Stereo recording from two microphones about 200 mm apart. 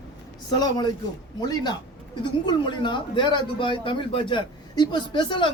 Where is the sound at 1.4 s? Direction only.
20° left (ahead or behind).